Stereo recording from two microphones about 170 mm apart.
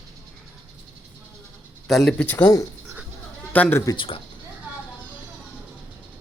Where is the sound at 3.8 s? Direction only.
25° left (ahead or behind).